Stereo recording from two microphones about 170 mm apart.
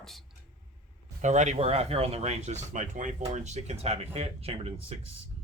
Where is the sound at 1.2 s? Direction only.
45° right (ahead or behind).